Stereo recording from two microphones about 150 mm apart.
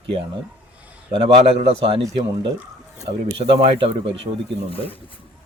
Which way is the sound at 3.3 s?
40° right (ahead or behind).